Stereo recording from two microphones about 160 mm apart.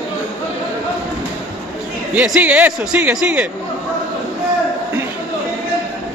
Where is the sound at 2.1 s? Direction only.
5° right (ahead or behind).